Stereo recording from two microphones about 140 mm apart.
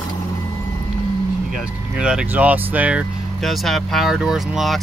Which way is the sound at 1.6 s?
5° right (ahead or behind).